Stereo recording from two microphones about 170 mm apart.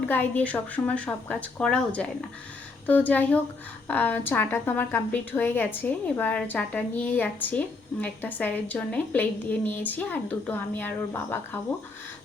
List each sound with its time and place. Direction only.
0.1 s a woman's voice: 10° left (ahead or behind)